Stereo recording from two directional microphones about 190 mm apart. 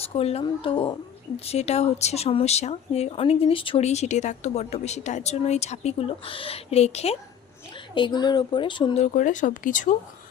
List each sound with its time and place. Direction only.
0.1 s speech: 30° left (ahead or behind)
7.9 s speech: 25° left (ahead or behind)
9.1 s speech: 40° left (ahead or behind)